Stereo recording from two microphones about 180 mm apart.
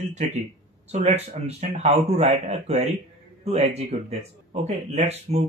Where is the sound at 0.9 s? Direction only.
40° right (ahead or behind).